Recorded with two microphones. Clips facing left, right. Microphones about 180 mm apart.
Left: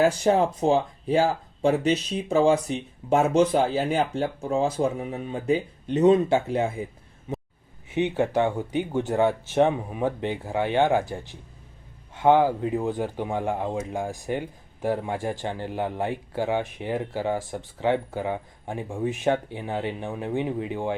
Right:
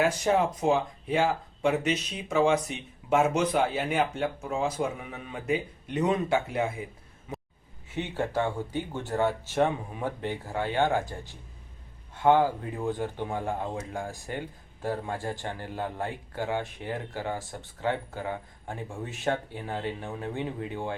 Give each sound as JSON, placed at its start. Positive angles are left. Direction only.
{"t": 0.0, "sound": "speech", "side_deg": 35}
{"t": 7.9, "sound": "speech", "side_deg": 15}
{"t": 12.1, "sound": "speech", "side_deg": 15}